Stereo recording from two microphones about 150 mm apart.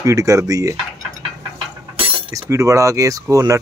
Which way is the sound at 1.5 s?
35° right (ahead or behind).